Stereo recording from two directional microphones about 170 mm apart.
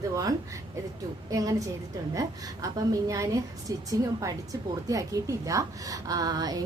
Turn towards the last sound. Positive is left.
turn(degrees=-20)  # may be behind; listen again after turning